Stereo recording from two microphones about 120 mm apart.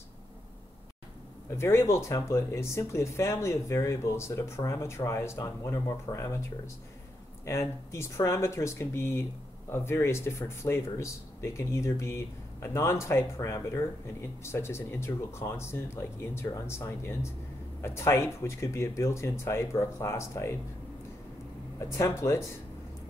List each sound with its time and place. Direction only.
1.6 s speech: 20° left (ahead or behind)
7.4 s speech: 25° left (ahead or behind)
21.9 s speech: 25° left (ahead or behind)